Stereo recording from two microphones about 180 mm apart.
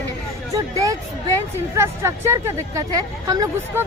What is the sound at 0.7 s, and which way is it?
Speech, 15° right (ahead or behind).